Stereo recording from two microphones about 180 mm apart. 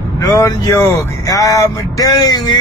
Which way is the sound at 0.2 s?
20° left (ahead or behind).